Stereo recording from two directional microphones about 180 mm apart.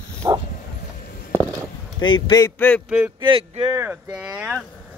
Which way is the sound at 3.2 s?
30° right (ahead or behind).